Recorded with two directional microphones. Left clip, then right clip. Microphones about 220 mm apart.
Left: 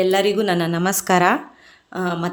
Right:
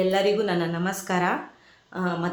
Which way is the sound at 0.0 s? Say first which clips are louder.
Left 4 dB; 45° left (ahead or behind).